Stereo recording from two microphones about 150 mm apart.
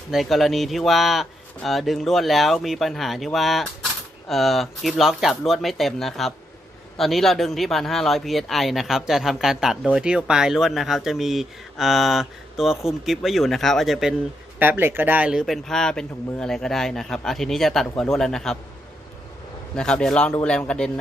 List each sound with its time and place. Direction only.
0.1 s speech: centre (ahead or behind)
14.6 s speech: 15° right (ahead or behind); by 18.5 s 5° left (ahead or behind)
19.7 s a man's voice: 5° left (ahead or behind)